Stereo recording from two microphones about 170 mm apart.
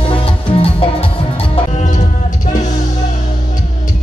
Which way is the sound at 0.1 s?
30° left (ahead or behind).